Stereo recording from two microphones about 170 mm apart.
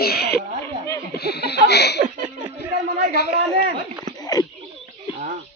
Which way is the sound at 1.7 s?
75° left (ahead or behind).